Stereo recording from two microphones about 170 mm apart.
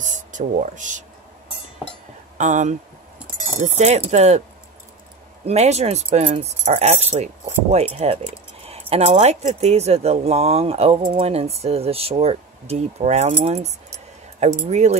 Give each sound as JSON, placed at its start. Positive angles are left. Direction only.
{"t": 0.0, "sound": "speech", "side_deg": -45}
{"t": 2.3, "sound": "speech", "side_deg": -45}
{"t": 5.4, "sound": "speech", "side_deg": -40}